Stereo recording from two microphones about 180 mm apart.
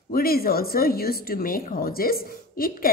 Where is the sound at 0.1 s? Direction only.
55° left (ahead or behind).